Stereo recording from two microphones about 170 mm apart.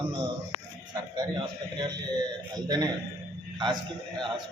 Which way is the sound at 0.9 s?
25° right (ahead or behind).